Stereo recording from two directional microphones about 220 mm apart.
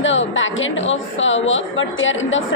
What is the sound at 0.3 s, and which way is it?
A woman's voice, 60° left (ahead or behind).